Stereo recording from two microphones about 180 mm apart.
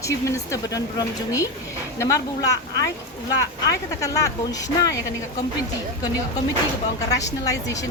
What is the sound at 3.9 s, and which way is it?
Speech, 20° left (ahead or behind).